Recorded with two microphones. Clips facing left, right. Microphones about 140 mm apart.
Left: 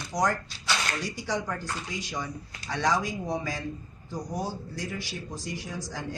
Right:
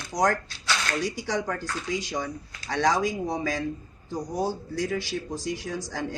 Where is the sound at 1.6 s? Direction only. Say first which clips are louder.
Right 5 dB; 80° right.